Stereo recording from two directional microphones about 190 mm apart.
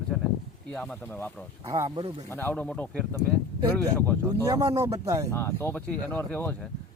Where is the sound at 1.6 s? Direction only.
20° right (ahead or behind).